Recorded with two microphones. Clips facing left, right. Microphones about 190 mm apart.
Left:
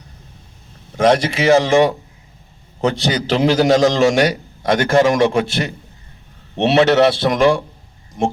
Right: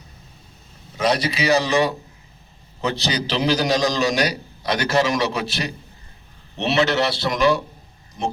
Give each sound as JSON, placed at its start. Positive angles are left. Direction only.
{"t": 0.9, "sound": "a man's voice", "side_deg": 50}
{"t": 2.8, "sound": "a man's voice", "side_deg": 50}
{"t": 6.7, "sound": "a man's voice", "side_deg": 50}